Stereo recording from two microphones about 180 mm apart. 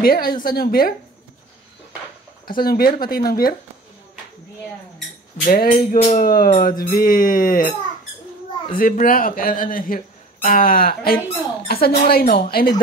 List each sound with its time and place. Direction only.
0.0 s speech: 55° left (ahead or behind)
2.4 s speech: 55° left (ahead or behind)
5.4 s speech: 50° left (ahead or behind)
8.7 s speech: 50° left (ahead or behind)